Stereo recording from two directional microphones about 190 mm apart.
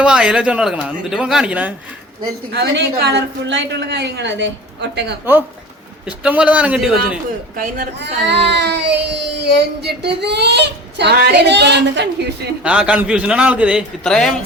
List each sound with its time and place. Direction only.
0.0 s speech: 5° right (ahead or behind)
2.2 s a woman's voice: 55° right (ahead or behind)
6.1 s a man's voice: 5° right (ahead or behind)
7.5 s a woman's voice: 50° right (ahead or behind); by 12.0 s 65° right (ahead or behind)
12.6 s speech: 5° right (ahead or behind)